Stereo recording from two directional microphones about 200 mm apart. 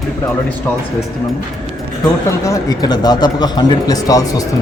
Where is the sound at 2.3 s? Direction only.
15° left (ahead or behind).